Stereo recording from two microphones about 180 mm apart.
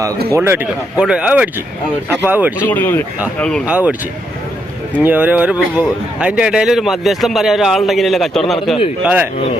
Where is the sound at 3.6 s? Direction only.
10° right (ahead or behind).